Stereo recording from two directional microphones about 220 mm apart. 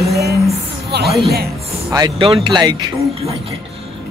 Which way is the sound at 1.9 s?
15° right (ahead or behind).